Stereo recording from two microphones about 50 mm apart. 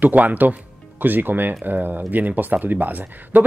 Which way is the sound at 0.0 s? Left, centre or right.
Right.